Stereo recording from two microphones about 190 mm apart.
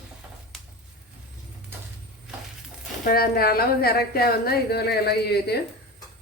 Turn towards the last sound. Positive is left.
turn(degrees=60)  # may be behind; listen again after turning